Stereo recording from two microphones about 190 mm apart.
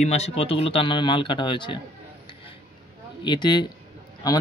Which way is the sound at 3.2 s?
25° left (ahead or behind).